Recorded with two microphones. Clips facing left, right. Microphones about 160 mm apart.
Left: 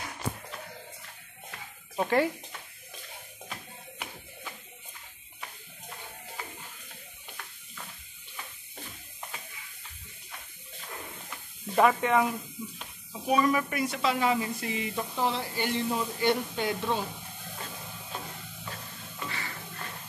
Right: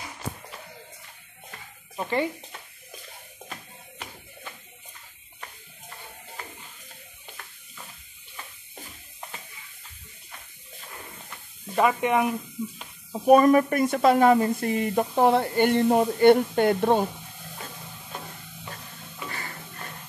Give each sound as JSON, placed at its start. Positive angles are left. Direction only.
{"t": 2.0, "sound": "speech", "side_deg": 5}
{"t": 11.7, "sound": "speech", "side_deg": -5}
{"t": 12.0, "sound": "speech", "side_deg": -20}
{"t": 13.1, "sound": "a woman's voice", "side_deg": -50}
{"t": 19.2, "sound": "music", "side_deg": -45}